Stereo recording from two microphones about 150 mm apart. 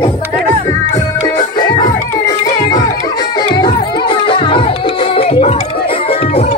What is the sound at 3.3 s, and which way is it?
Music, 30° left (ahead or behind).